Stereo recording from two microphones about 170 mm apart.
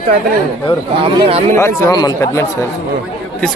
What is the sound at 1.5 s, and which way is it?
Speech, 20° left (ahead or behind).